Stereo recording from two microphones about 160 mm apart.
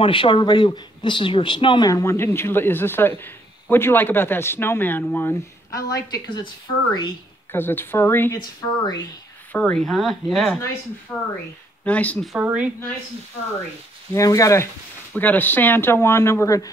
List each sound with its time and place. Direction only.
0.0 s speech: 30° left (ahead or behind); by 5.8 s 15° left (ahead or behind)
6.9 s speech: 30° left (ahead or behind)
7.5 s speech: 15° left (ahead or behind)
8.4 s speech: 25° left (ahead or behind)
9.5 s speech: 10° left (ahead or behind)
12.4 s a woman's voice: 10° right (ahead or behind)
14.1 s speech: 20° left (ahead or behind)